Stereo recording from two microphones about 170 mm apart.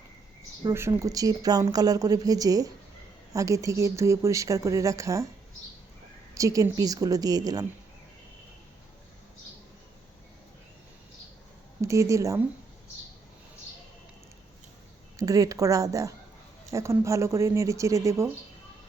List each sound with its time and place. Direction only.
0.6 s speech: 15° right (ahead or behind)
6.3 s speech: 20° right (ahead or behind)
11.8 s speech: 15° right (ahead or behind)
15.1 s speech: 20° right (ahead or behind)